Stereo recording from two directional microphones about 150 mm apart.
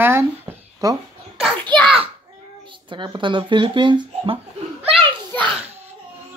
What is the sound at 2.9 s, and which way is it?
Speech, 30° right (ahead or behind).